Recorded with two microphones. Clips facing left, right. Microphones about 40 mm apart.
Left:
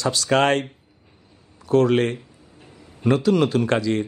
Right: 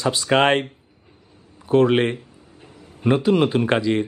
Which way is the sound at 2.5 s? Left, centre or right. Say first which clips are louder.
Right 2 dB; right.